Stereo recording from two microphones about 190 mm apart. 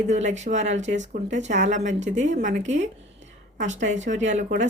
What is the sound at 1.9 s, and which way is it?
Speech, 75° right (ahead or behind).